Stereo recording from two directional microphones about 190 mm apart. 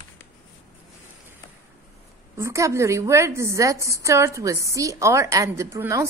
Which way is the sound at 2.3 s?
15° right (ahead or behind).